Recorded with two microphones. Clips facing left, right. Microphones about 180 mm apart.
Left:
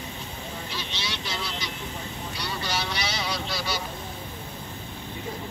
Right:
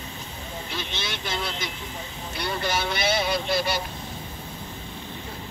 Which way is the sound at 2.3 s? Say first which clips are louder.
Right 5 dB; 55° right (ahead or behind).